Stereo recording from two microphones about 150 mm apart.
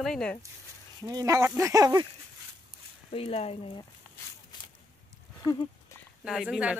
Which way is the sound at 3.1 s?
40° left (ahead or behind).